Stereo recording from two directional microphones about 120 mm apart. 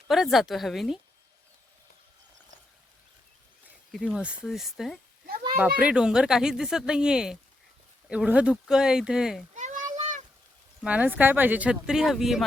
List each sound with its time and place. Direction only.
0.1 s speech: centre (ahead or behind)
3.9 s speech: 5° right (ahead or behind)
9.6 s a sound: 90° right
10.8 s speech: 15° right (ahead or behind)